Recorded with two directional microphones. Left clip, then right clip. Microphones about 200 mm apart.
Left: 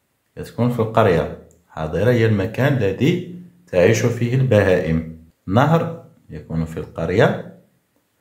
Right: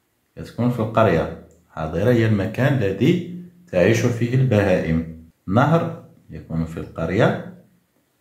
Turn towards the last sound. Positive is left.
turn(degrees=25)  # may be behind; listen again after turning